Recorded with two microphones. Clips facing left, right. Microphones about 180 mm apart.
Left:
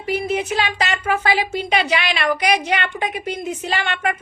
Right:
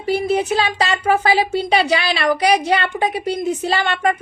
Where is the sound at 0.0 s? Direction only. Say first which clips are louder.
Right 4 dB; 35° right (ahead or behind).